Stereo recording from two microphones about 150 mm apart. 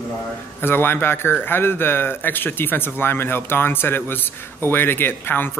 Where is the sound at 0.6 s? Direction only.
15° left (ahead or behind).